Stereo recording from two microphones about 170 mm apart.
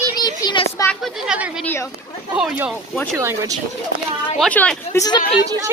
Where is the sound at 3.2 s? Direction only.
20° right (ahead or behind).